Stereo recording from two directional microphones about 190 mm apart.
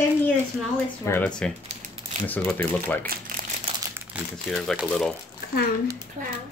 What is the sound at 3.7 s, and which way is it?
Crumpling, 30° right (ahead or behind).